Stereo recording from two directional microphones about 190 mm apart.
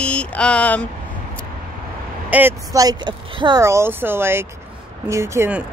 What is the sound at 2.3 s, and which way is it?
Speech, 10° right (ahead or behind).